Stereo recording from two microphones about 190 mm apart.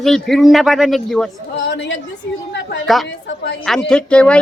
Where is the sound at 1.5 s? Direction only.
70° left (ahead or behind).